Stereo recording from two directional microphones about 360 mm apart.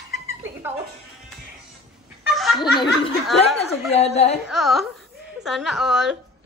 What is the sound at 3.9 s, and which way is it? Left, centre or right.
Speech, centre.